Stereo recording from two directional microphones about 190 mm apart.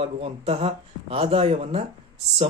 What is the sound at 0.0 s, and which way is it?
Speech, 30° right (ahead or behind).